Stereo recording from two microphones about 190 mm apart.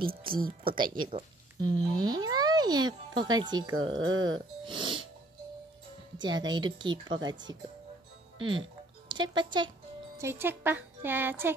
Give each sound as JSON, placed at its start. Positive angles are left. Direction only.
{"t": 0.0, "sound": "speech", "side_deg": -30}
{"t": 0.3, "sound": "speech", "side_deg": -50}
{"t": 0.7, "sound": "speech", "side_deg": -25}
{"t": 4.0, "sound": "speech", "side_deg": -90}
{"t": 4.6, "sound": "music", "side_deg": -25}
{"t": 6.1, "sound": "speech", "side_deg": -20}
{"t": 10.1, "sound": "music", "side_deg": -15}